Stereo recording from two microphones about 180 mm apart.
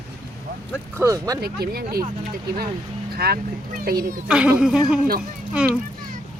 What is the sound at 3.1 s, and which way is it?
Speech, 60° right (ahead or behind).